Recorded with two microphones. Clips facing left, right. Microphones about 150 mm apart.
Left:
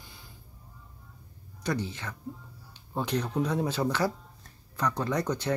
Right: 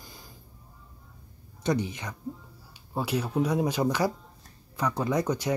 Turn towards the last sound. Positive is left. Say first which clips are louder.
# right 2 dB
turn(degrees=-10)  # may be behind; listen again after turning